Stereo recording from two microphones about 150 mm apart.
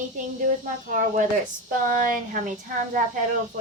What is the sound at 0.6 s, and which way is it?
A woman's voice, 60° right (ahead or behind).